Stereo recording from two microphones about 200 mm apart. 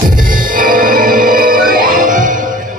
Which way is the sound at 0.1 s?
45° right (ahead or behind).